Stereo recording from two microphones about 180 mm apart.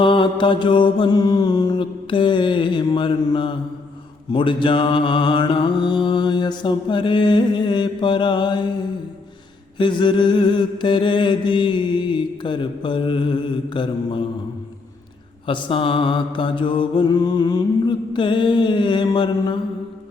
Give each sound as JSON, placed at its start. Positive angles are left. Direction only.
{"t": 0.0, "sound": "mantra", "side_deg": 30}
{"t": 9.7, "sound": "mantra", "side_deg": 25}
{"t": 15.4, "sound": "mantra", "side_deg": 30}